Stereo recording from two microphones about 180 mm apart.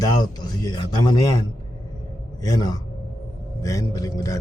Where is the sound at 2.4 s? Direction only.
20° left (ahead or behind).